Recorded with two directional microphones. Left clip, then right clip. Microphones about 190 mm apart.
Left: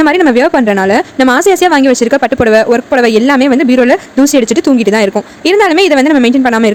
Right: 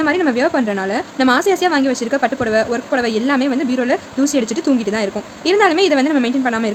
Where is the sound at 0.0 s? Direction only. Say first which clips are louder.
Left 8 dB; 40° left (ahead or behind).